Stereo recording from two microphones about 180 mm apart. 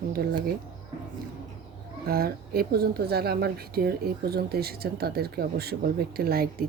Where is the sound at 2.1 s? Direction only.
55° right (ahead or behind).